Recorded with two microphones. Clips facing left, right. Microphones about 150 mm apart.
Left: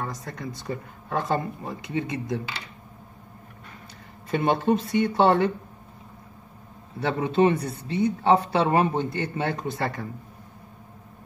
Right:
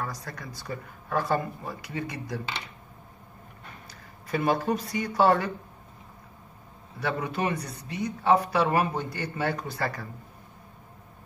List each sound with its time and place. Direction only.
0.0 s speech: 20° left (ahead or behind)
4.3 s speech: 25° left (ahead or behind)
7.0 s speech: 25° left (ahead or behind)